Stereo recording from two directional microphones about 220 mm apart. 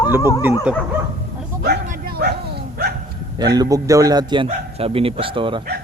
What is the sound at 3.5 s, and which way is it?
A man's voice, 15° right (ahead or behind).